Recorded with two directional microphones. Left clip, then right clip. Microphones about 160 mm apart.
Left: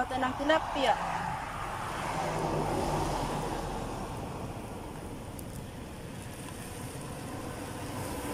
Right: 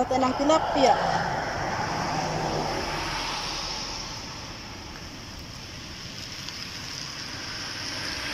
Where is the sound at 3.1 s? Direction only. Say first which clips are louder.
Right 3 dB; 40° left (ahead or behind).